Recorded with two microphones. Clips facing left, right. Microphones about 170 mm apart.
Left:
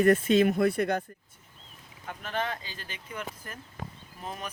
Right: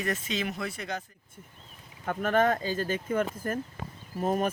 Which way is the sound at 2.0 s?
50° right (ahead or behind).